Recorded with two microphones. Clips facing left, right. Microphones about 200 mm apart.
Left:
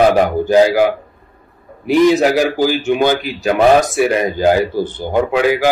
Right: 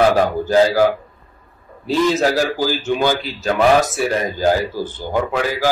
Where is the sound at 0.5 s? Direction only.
15° left (ahead or behind).